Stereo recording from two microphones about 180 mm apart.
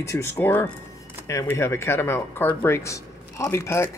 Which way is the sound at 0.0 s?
15° left (ahead or behind).